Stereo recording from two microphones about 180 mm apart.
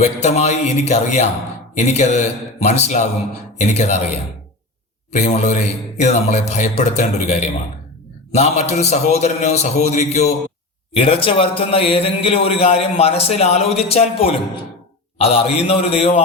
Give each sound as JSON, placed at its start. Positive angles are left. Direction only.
{"t": 0.0, "sound": "a man's voice", "side_deg": 40}
{"t": 5.1, "sound": "a man's voice", "side_deg": 40}